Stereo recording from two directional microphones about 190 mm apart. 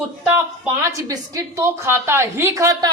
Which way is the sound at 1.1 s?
15° right (ahead or behind).